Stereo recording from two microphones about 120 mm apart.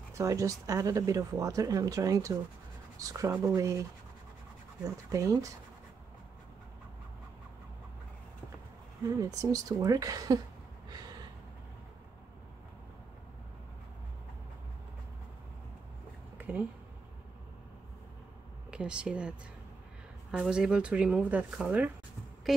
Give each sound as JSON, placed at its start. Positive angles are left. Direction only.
{"t": 0.1, "sound": "speech", "side_deg": -25}
{"t": 5.1, "sound": "speech", "side_deg": -30}
{"t": 9.2, "sound": "speech", "side_deg": -30}
{"t": 10.9, "sound": "gasp", "side_deg": -35}
{"t": 16.3, "sound": "a sound", "side_deg": -10}
{"t": 18.7, "sound": "speech", "side_deg": -10}